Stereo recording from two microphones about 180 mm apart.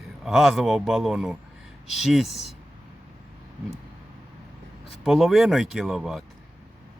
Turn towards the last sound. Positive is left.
turn(degrees=0)  # may be behind; listen again after turning